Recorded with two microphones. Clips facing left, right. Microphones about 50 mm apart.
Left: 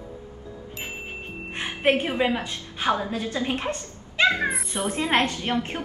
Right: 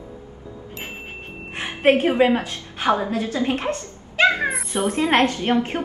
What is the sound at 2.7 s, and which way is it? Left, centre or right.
Speech, right.